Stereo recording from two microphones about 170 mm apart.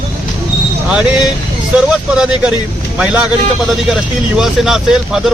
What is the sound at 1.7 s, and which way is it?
Speech, 5° right (ahead or behind).